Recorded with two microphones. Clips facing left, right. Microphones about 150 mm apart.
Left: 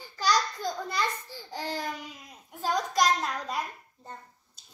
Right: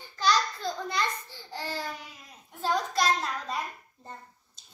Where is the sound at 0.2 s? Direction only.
10° left (ahead or behind).